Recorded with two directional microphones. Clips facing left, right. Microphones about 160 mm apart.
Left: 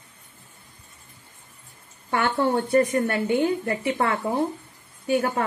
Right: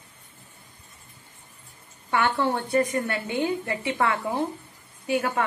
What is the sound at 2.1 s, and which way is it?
A woman's voice, 45° left (ahead or behind).